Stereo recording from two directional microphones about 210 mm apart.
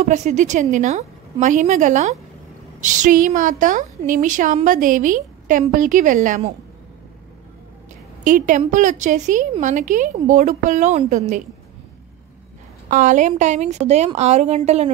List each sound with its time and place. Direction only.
0.0 s a woman's voice: 35° right (ahead or behind)
8.2 s a woman's voice: 40° right (ahead or behind)
12.9 s a woman's voice: 35° right (ahead or behind)